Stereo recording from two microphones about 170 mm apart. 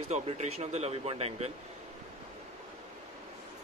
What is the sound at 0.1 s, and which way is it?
A man's voice, 40° right (ahead or behind).